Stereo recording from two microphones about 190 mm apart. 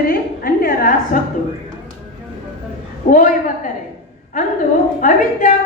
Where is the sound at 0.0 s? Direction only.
50° left (ahead or behind).